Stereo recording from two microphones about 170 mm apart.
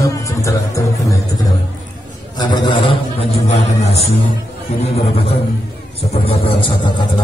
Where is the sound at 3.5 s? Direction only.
40° left (ahead or behind).